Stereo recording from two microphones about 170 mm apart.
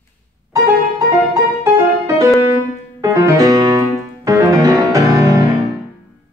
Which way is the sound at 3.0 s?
20° right (ahead or behind).